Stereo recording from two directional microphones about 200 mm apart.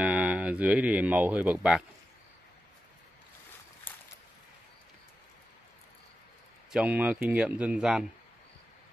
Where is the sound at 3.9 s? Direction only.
10° left (ahead or behind).